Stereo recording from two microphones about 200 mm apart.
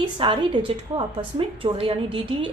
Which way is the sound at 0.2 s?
25° right (ahead or behind).